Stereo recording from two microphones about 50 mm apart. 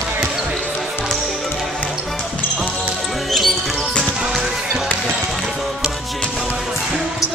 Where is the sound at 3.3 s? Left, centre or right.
Centre.